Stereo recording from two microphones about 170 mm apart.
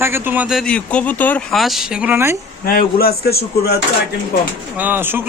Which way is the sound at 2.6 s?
60° left (ahead or behind).